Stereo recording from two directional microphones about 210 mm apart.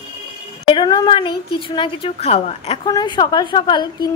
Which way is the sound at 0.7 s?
20° left (ahead or behind).